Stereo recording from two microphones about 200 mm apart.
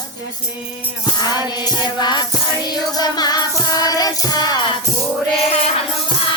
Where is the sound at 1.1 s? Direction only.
20° left (ahead or behind).